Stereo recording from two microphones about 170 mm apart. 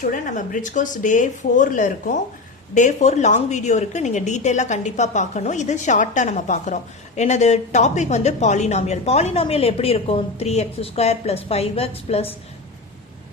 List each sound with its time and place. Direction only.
0.0 s a woman's voice: 50° left (ahead or behind)